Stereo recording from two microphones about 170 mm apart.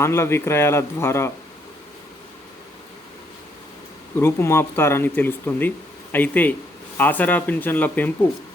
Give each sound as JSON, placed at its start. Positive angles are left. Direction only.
{"t": 0.0, "sound": "speech", "side_deg": 15}
{"t": 4.2, "sound": "speech", "side_deg": 15}